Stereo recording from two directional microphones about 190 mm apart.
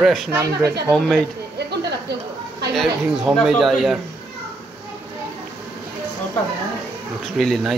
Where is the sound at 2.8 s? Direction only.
Centre (ahead or behind).